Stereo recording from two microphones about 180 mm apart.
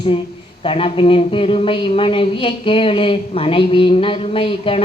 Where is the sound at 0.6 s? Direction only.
30° left (ahead or behind).